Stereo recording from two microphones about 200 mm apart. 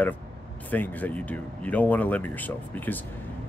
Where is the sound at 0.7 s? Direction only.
10° left (ahead or behind).